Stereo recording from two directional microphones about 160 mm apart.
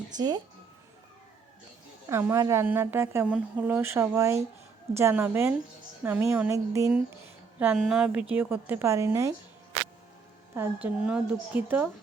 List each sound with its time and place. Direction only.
0.2 s speech: 25° right (ahead or behind)
2.0 s speech: 15° right (ahead or behind)
7.6 s a woman's voice: 5° right (ahead or behind)
10.5 s speech: 15° right (ahead or behind)